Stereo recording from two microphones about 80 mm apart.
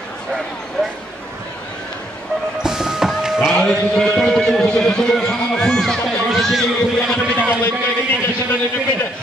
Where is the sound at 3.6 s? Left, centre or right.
Centre.